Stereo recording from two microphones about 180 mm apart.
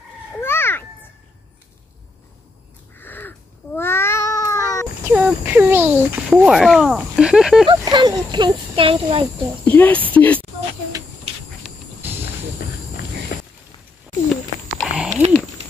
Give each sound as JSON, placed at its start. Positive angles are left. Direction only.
{"t": 0.4, "sound": "children playing", "side_deg": 15}
{"t": 3.0, "sound": "cat", "side_deg": 10}
{"t": 5.0, "sound": "speech", "side_deg": -10}
{"t": 7.6, "sound": "speech", "side_deg": -25}
{"t": 9.7, "sound": "speech", "side_deg": 10}
{"t": 13.3, "sound": "a sound", "side_deg": 70}
{"t": 14.3, "sound": "a sound", "side_deg": 0}